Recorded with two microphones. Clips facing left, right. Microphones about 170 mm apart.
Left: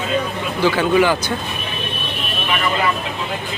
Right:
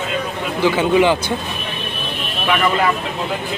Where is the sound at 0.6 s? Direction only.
20° right (ahead or behind).